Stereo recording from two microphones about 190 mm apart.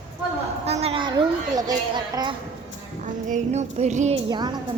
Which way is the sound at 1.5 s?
20° right (ahead or behind).